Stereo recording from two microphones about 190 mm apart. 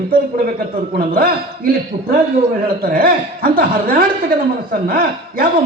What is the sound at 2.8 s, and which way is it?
A man's voice, 50° right (ahead or behind).